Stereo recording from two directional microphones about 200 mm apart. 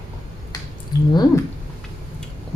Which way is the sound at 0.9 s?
20° left (ahead or behind).